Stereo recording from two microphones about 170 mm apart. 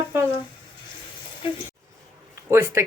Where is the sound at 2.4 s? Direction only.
15° right (ahead or behind).